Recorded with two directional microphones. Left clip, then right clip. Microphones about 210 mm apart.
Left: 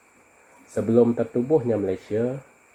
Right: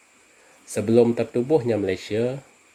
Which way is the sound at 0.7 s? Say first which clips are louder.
Right 1 dB; 55° right (ahead or behind).